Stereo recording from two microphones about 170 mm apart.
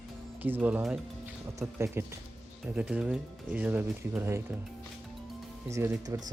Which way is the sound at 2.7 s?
5° right (ahead or behind).